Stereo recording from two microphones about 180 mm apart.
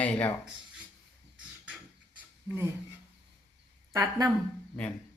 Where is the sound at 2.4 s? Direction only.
15° right (ahead or behind).